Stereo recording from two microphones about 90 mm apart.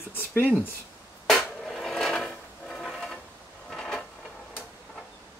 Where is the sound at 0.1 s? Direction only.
25° left (ahead or behind).